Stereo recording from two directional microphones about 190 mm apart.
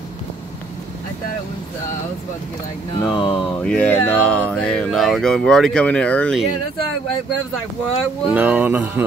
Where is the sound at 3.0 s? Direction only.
25° left (ahead or behind).